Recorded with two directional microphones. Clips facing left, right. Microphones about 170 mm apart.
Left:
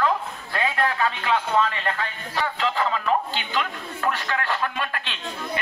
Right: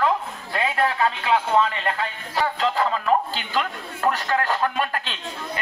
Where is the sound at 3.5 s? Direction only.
40° right (ahead or behind).